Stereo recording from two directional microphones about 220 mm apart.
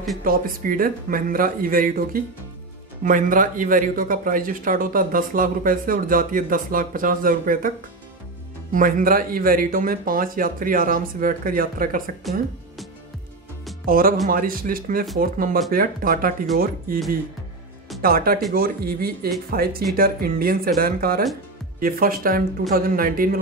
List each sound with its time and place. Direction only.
0.2 s speech: 40° right (ahead or behind)
8.7 s speech: 40° right (ahead or behind)
12.2 s speech: centre (ahead or behind)
13.8 s speech: 40° right (ahead or behind)
18.0 s speech: 40° right (ahead or behind)